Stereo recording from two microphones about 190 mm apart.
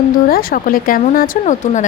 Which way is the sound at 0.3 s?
50° left (ahead or behind).